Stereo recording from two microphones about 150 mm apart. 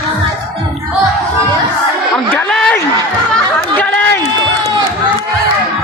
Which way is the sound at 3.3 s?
10° left (ahead or behind).